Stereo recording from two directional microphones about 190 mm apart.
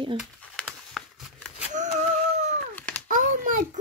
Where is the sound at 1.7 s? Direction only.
40° right (ahead or behind).